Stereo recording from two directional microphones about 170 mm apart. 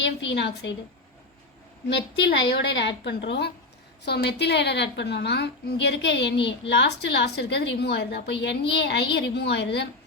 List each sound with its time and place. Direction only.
0.0 s a woman's voice: 90° left
1.9 s a woman's voice: 90° left